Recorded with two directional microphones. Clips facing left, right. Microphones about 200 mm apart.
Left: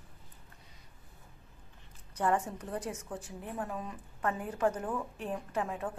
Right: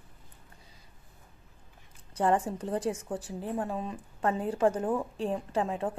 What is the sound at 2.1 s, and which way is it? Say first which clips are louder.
A woman's voice: right 4 dB; 30° right (ahead or behind).